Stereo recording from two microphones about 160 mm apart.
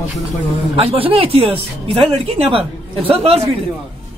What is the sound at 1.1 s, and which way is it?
Speech, 35° right (ahead or behind).